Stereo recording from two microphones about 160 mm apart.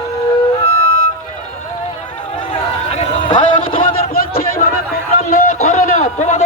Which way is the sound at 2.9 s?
55° left (ahead or behind).